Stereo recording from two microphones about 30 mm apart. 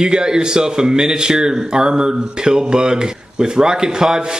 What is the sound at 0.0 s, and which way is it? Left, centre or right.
Speech, right.